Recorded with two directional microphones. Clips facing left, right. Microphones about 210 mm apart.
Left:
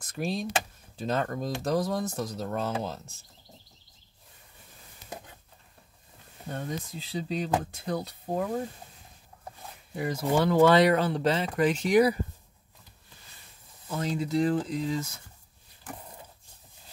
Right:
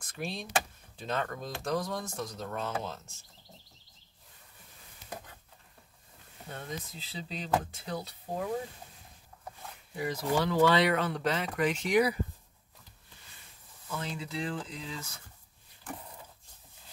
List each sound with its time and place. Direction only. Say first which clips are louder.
0.0 s speech: left 7 dB; 40° left (ahead or behind)
7.1 s speech: left 4 dB; 45° left (ahead or behind)
10.0 s speech: left 4 dB; 50° left (ahead or behind)
13.8 s speech: left 8 dB; 40° left (ahead or behind)